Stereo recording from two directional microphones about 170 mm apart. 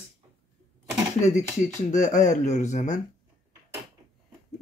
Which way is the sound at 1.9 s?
45° left (ahead or behind).